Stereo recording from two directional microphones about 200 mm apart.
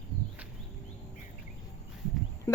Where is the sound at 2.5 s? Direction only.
15° left (ahead or behind).